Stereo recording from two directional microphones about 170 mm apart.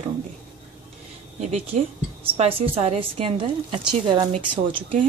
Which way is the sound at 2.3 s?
35° right (ahead or behind).